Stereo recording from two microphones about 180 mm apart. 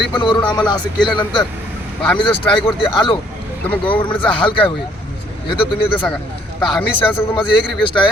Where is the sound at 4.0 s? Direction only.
30° left (ahead or behind).